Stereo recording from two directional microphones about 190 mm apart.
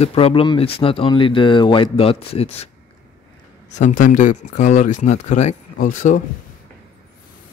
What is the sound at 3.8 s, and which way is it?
Speech, 45° left (ahead or behind).